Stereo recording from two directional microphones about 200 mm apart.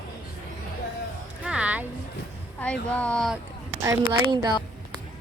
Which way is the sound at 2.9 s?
5° left (ahead or behind).